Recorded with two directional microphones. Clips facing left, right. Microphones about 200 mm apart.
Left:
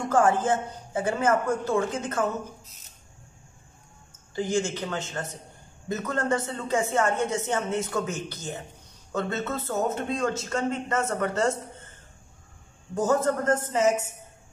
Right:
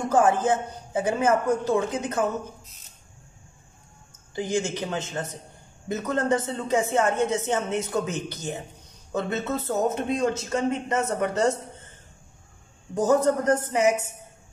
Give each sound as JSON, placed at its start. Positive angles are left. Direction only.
{"t": 0.1, "sound": "a man's voice", "side_deg": -15}
{"t": 4.4, "sound": "a man's voice", "side_deg": -15}
{"t": 12.9, "sound": "a man's voice", "side_deg": -15}